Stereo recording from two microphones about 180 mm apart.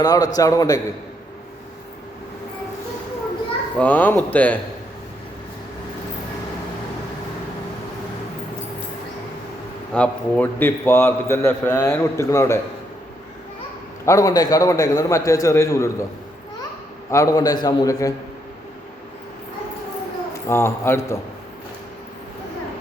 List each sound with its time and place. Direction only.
0.0 s a man's voice: 20° left (ahead or behind)
3.8 s a man's voice: 10° left (ahead or behind)
9.9 s a man's voice: 5° left (ahead or behind)
14.0 s a man's voice: 20° left (ahead or behind)
17.1 s a man's voice: 20° left (ahead or behind)
20.5 s a man's voice: 15° left (ahead or behind)